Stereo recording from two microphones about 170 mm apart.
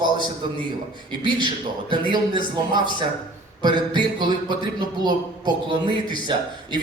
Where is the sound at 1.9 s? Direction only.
25° right (ahead or behind).